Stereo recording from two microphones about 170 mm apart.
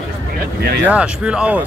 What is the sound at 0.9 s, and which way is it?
Speech, 5° right (ahead or behind).